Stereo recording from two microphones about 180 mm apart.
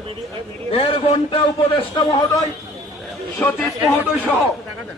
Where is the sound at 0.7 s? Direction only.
35° left (ahead or behind).